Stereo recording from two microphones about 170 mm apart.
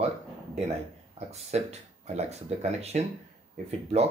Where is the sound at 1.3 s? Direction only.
40° right (ahead or behind).